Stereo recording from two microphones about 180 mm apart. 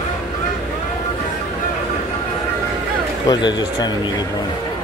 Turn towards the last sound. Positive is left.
turn(degrees=25)  # may be behind; listen again after turning